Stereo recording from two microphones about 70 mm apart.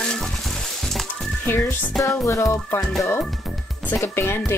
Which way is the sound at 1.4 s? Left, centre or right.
Left.